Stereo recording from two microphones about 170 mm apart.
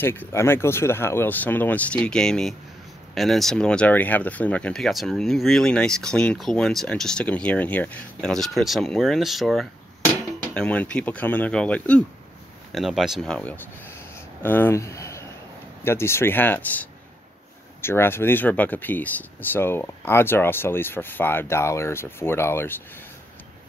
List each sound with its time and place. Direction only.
0.0 s speech: 10° left (ahead or behind)
17.8 s speech: 15° left (ahead or behind)